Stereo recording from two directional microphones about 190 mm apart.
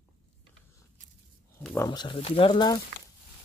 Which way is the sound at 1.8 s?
25° left (ahead or behind).